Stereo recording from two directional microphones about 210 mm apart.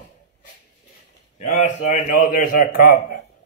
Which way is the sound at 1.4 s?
35° left (ahead or behind).